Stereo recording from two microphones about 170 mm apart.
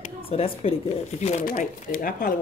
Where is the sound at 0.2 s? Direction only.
35° left (ahead or behind).